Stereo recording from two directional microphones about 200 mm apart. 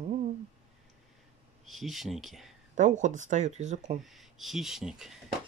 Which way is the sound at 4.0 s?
Centre (ahead or behind).